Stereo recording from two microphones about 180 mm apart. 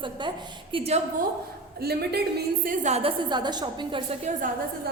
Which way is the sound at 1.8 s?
60° right (ahead or behind).